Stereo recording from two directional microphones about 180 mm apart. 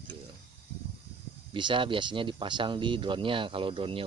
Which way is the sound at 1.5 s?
25° right (ahead or behind).